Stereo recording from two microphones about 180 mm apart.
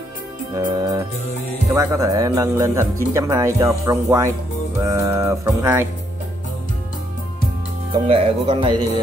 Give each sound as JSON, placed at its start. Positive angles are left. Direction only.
{"t": 0.6, "sound": "speech", "side_deg": -25}
{"t": 7.9, "sound": "speech", "side_deg": -30}